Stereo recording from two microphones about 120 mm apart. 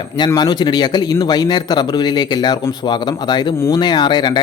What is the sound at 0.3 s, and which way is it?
A man's voice, 35° left (ahead or behind).